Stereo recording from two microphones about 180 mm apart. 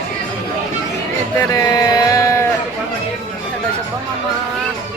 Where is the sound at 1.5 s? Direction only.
20° left (ahead or behind).